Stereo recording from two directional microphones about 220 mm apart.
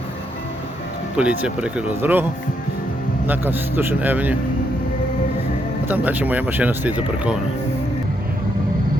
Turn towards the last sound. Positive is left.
turn(degrees=-5)  # may be behind; listen again after turning